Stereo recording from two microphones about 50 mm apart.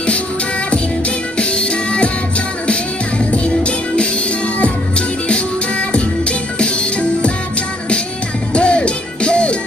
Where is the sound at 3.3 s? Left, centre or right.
Left.